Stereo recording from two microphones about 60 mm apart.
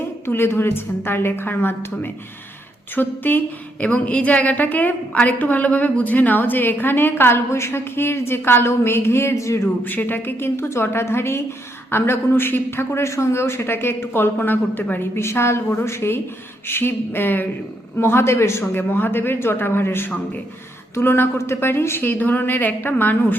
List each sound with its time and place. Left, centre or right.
0.3 s a woman's voice: left
3.8 s a woman's voice: left
9.8 s a man's voice: left
18.0 s a man's voice: left
18.7 s a woman's voice: left